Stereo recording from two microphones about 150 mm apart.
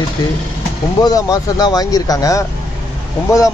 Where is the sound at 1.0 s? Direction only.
25° left (ahead or behind).